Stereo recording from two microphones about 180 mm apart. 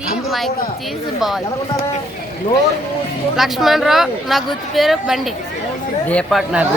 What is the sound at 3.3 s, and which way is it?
Speech, centre (ahead or behind).